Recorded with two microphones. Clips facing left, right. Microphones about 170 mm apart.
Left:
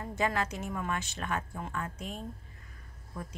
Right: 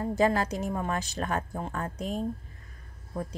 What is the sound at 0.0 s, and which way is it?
A woman's voice, 35° right (ahead or behind).